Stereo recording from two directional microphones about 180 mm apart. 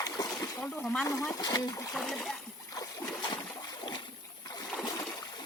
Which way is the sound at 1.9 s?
Centre (ahead or behind).